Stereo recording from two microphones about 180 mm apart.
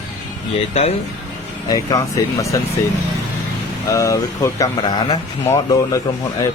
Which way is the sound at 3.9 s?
20° left (ahead or behind).